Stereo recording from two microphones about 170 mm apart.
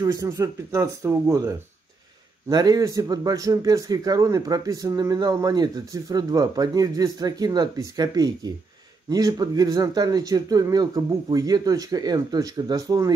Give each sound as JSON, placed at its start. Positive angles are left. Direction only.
{"t": 0.0, "sound": "speech", "side_deg": -20}
{"t": 2.5, "sound": "a man's voice", "side_deg": -20}